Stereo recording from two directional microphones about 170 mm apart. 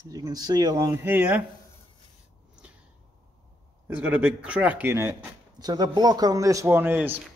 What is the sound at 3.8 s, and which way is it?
A man's voice, 10° right (ahead or behind).